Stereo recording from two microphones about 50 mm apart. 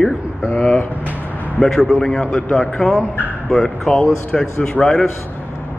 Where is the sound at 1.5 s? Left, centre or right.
Centre.